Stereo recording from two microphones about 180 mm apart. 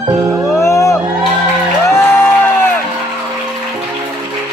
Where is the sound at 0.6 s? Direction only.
15° left (ahead or behind).